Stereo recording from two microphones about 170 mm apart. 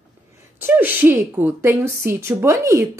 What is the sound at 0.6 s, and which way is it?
Speech, 10° right (ahead or behind).